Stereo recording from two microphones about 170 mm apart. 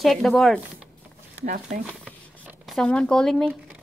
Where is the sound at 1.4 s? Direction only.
50° right (ahead or behind).